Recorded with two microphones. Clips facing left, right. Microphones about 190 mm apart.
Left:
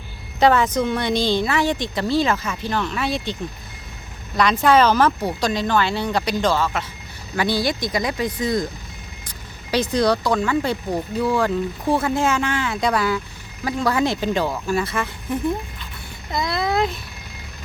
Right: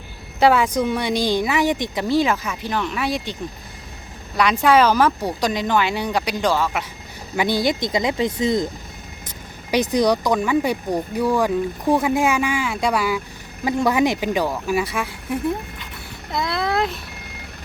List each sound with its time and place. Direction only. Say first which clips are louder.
0.3 s speech: even; 10° right (ahead or behind)
4.4 s speech: even; 10° right (ahead or behind)
9.7 s speech: right 1 dB; 15° right (ahead or behind); by 17.0 s centre (ahead or behind)